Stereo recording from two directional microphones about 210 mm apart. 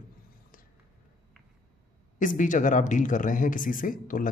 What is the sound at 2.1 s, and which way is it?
Speech, 40° left (ahead or behind).